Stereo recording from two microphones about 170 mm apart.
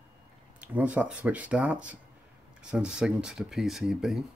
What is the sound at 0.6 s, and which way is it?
Speech, 10° right (ahead or behind).